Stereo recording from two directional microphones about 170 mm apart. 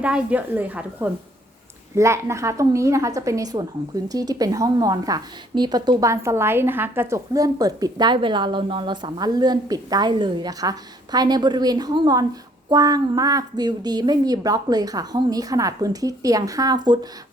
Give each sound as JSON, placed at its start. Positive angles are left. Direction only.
{"t": 0.0, "sound": "a woman's voice", "side_deg": -5}